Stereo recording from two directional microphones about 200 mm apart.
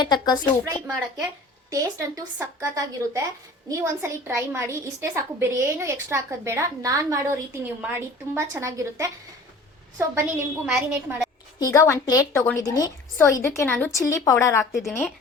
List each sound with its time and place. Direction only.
0.0 s speech: 20° left (ahead or behind)
1.7 s a woman's voice: 15° right (ahead or behind)
11.6 s a woman's voice: 15° left (ahead or behind)